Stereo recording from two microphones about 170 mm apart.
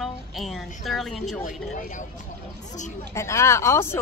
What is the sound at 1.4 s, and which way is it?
Speech, 50° left (ahead or behind).